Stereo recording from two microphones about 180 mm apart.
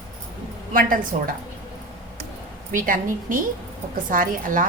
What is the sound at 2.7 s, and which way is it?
A woman's voice, 50° right (ahead or behind).